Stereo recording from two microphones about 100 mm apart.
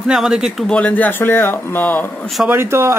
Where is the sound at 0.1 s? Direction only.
5° right (ahead or behind).